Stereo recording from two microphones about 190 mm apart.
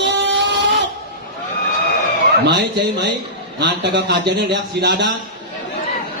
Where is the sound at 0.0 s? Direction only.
65° right (ahead or behind).